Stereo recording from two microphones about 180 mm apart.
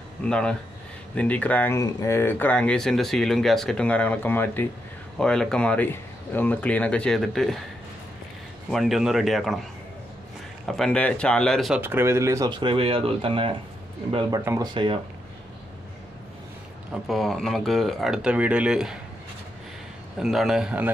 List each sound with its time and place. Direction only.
0.2 s speech: 5° left (ahead or behind)
8.6 s speech: centre (ahead or behind)
10.7 s speech: 5° left (ahead or behind)
11.8 s speech: 15° right (ahead or behind); by 13.5 s 30° right (ahead or behind)
14.4 s speech: 15° right (ahead or behind)
14.7 s speech: 25° right (ahead or behind)
16.9 s speech: centre (ahead or behind)
20.2 s speech: centre (ahead or behind)